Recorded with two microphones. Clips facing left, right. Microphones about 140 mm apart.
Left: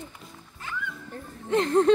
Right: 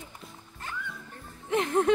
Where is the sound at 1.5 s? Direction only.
15° right (ahead or behind).